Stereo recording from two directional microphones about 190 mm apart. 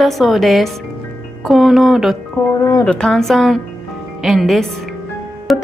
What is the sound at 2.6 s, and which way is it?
Speech, 10° left (ahead or behind).